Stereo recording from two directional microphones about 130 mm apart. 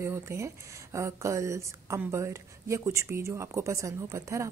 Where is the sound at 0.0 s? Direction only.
20° right (ahead or behind).